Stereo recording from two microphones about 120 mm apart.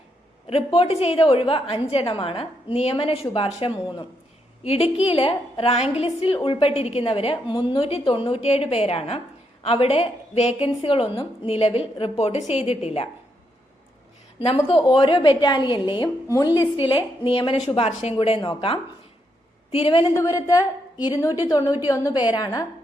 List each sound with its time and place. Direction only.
0.4 s a woman's voice: 50° left (ahead or behind)
4.6 s a woman's voice: 60° left (ahead or behind)
14.4 s a woman's voice: 50° left (ahead or behind)
20.1 s a woman's voice: 25° left (ahead or behind)